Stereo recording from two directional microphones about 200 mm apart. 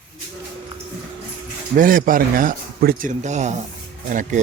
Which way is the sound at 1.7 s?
45° right (ahead or behind).